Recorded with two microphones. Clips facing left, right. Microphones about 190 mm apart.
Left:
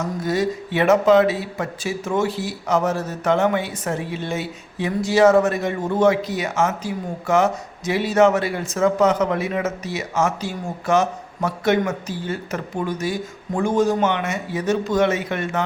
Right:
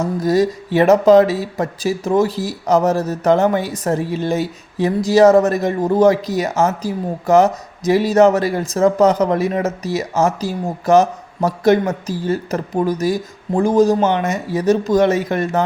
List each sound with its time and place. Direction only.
0.0 s speech: 35° right (ahead or behind)